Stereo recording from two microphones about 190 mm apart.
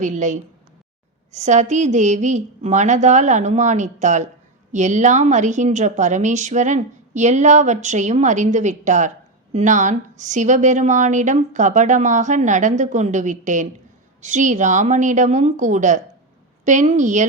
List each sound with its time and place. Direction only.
0.0 s a woman's voice: 40° right (ahead or behind)